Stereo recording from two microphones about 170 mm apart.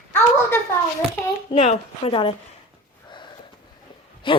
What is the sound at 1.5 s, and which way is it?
Speech, 35° left (ahead or behind).